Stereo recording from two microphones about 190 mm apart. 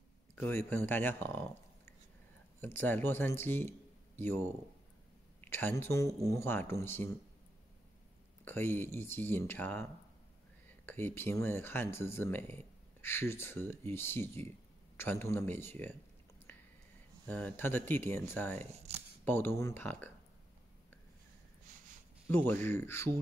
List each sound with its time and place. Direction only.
0.4 s speech: 10° left (ahead or behind)
2.6 s speech: 10° left (ahead or behind)
5.4 s speech: 10° left (ahead or behind)
8.5 s speech: 10° left (ahead or behind)
10.9 s speech: 10° left (ahead or behind)
16.5 s a sound: 10° left (ahead or behind)
17.3 s speech: 10° left (ahead or behind)
18.6 s speech: 35° right (ahead or behind)
19.2 s speech: 10° left (ahead or behind)
22.3 s speech: 10° left (ahead or behind)